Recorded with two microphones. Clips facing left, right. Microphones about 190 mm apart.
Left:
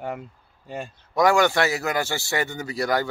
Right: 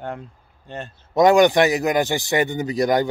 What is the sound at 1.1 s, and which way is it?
A man's voice, 20° right (ahead or behind).